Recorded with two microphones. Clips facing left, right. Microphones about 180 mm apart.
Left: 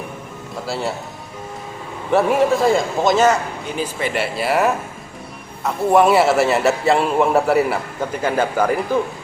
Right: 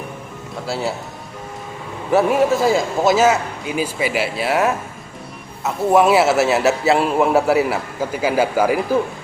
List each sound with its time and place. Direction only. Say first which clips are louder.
0.5 s a man's voice: right 1 dB; centre (ahead or behind)
2.0 s a man's voice: even; centre (ahead or behind)